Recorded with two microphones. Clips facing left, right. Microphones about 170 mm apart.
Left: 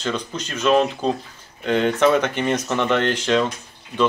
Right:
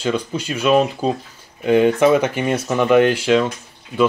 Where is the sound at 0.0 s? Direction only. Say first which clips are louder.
Right 5 dB; 10° right (ahead or behind).